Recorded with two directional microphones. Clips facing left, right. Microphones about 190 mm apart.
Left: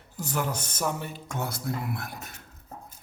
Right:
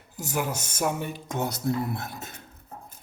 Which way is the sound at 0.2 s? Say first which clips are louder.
Right 1 dB; 10° right (ahead or behind).